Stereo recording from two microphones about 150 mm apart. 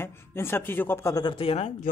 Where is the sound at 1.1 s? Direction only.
30° left (ahead or behind).